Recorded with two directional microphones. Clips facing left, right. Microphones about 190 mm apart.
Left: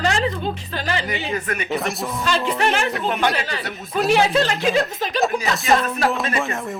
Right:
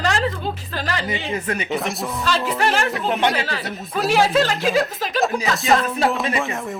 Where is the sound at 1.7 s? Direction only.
Centre (ahead or behind).